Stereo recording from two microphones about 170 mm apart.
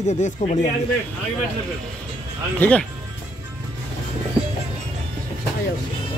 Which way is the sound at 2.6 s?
5° left (ahead or behind).